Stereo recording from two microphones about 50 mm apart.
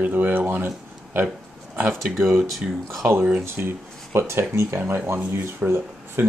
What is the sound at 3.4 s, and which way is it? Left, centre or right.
Speech, right.